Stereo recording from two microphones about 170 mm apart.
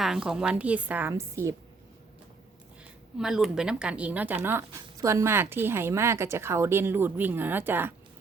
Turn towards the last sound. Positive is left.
turn(degrees=-10)  # may be behind; listen again after turning